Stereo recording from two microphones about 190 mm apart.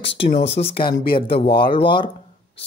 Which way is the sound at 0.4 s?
30° left (ahead or behind).